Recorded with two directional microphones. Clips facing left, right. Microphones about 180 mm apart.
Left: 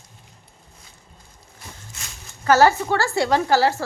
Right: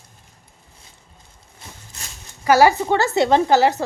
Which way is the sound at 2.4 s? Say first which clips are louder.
Right 2 dB; 10° right (ahead or behind).